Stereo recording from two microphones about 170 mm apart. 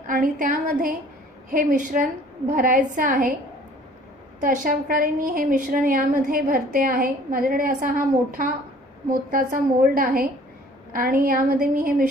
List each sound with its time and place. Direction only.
0.0 s a woman's voice: 50° right (ahead or behind)
4.4 s a woman's voice: 55° right (ahead or behind)